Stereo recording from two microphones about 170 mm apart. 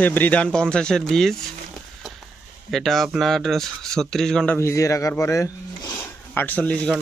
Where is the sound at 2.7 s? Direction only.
Centre (ahead or behind).